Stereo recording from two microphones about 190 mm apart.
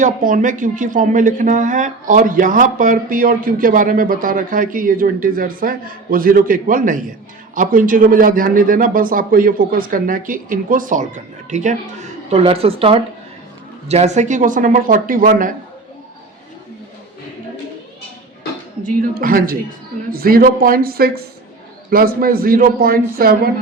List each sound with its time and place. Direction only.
0.0 s speech: 45° right (ahead or behind)
18.8 s speech: 50° right (ahead or behind)